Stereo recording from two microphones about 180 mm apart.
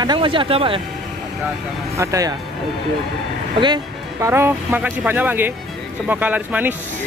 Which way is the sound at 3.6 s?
25° right (ahead or behind).